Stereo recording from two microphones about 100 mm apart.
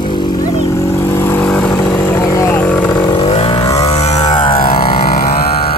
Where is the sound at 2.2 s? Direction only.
35° left (ahead or behind).